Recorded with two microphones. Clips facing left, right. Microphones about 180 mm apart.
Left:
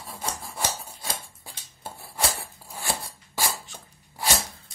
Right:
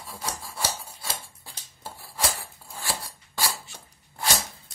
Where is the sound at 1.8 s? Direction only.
20° left (ahead or behind).